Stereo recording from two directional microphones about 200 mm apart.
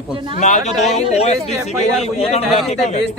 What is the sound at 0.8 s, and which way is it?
A man's voice, 35° left (ahead or behind).